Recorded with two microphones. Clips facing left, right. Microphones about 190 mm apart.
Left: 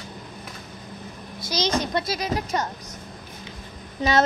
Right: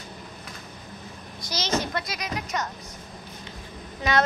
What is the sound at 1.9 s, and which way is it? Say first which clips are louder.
Speech: left 6 dB; 30° left (ahead or behind).